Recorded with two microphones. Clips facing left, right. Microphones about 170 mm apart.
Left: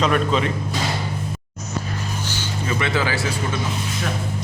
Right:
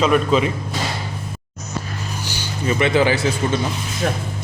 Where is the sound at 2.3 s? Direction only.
15° right (ahead or behind).